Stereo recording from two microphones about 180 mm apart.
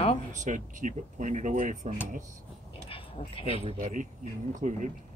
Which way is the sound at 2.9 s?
30° left (ahead or behind).